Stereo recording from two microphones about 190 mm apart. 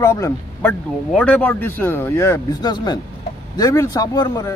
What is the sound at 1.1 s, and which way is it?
Speech, 5° left (ahead or behind).